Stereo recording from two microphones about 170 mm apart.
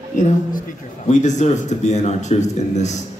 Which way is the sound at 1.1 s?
45° left (ahead or behind).